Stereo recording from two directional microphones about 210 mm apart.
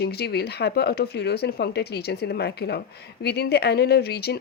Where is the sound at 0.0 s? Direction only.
50° left (ahead or behind).